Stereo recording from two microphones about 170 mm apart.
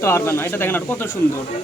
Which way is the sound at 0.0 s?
15° left (ahead or behind).